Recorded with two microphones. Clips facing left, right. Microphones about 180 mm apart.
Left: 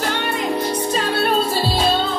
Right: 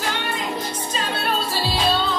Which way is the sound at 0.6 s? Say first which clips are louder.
Left 7 dB; 60° left (ahead or behind).